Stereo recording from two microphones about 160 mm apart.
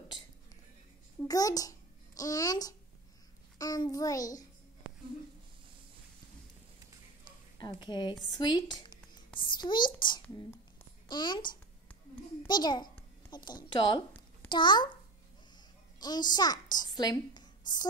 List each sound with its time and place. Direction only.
1.2 s a child's voice: 25° left (ahead or behind)
7.5 s a child's voice: 25° left (ahead or behind)
11.1 s a child's voice: 30° left (ahead or behind)
16.0 s a woman's voice: 25° left (ahead or behind)